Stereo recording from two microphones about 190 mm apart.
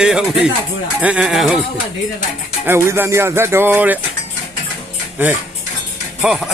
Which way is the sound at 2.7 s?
15° right (ahead or behind).